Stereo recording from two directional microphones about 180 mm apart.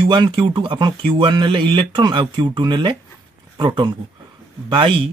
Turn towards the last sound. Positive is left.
turn(degrees=-30)  # may be behind; listen again after turning